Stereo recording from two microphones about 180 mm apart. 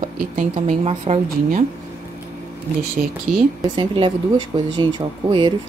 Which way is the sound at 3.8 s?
30° right (ahead or behind).